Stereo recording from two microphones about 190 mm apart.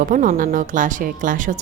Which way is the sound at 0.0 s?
45° right (ahead or behind).